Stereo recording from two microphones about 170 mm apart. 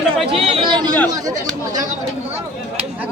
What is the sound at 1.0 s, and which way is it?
Speech, 20° right (ahead or behind).